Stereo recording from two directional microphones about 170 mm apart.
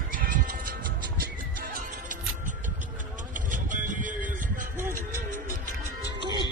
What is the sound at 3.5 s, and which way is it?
Music, 50° right (ahead or behind).